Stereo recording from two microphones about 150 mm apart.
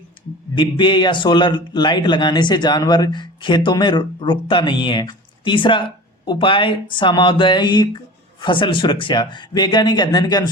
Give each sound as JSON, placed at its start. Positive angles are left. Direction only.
{"t": 0.5, "sound": "a man's voice", "side_deg": 30}